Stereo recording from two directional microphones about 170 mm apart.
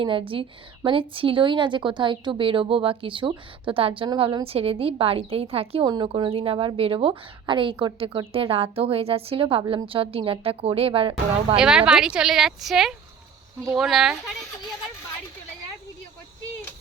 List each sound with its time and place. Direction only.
0.0 s a woman's voice: 30° right (ahead or behind)
11.5 s a woman's voice: 5° right (ahead or behind)